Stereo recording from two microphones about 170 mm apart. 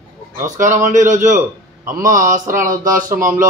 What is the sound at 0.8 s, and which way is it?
A man's voice, 45° right (ahead or behind).